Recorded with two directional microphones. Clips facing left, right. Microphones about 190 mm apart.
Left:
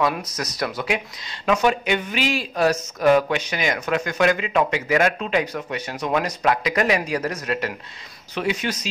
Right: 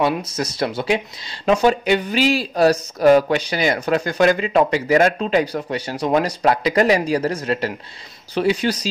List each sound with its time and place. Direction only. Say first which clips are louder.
0.0 s speech: right 3 dB; 30° right (ahead or behind)